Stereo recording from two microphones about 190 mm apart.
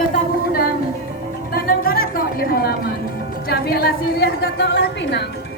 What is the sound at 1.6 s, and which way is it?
Music, 50° left (ahead or behind).